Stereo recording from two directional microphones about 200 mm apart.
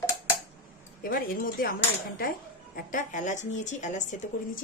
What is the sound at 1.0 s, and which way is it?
Speech, 45° left (ahead or behind).